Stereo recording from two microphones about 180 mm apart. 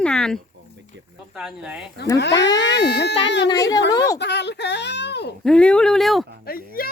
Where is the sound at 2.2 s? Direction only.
75° left (ahead or behind).